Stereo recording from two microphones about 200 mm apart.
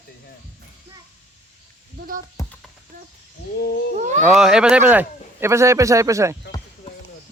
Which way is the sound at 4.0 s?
40° right (ahead or behind).